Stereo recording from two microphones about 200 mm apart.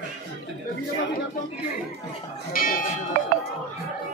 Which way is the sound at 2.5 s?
45° left (ahead or behind).